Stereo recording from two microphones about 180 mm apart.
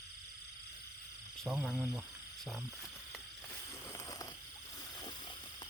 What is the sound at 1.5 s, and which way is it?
Speech, 10° right (ahead or behind).